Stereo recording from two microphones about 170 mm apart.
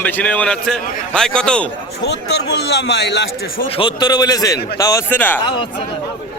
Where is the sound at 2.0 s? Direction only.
80° left.